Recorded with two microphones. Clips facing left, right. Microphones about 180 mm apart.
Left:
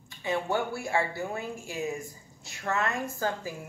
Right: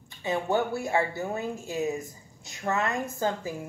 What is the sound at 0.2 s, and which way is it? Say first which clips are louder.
A woman's voice: right 2 dB; 20° right (ahead or behind).